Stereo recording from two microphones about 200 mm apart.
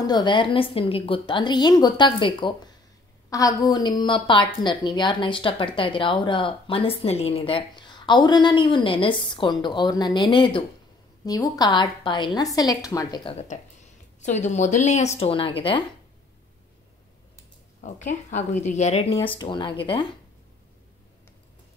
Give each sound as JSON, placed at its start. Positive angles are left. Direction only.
{"t": 0.0, "sound": "a woman's voice", "side_deg": 20}
{"t": 17.8, "sound": "a woman's voice", "side_deg": 35}
{"t": 19.2, "sound": "a woman's voice", "side_deg": 25}